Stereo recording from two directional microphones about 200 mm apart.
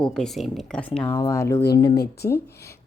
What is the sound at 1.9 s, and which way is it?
Speech, 55° left (ahead or behind).